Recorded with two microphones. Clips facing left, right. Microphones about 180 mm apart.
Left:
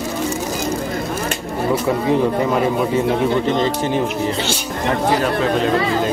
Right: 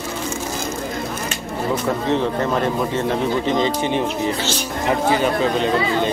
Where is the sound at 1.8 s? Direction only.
10° left (ahead or behind).